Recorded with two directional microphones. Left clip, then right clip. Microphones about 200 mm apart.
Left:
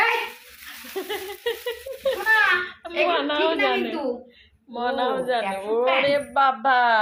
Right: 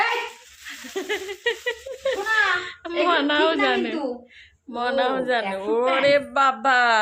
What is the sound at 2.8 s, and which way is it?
A woman's voice, 25° right (ahead or behind).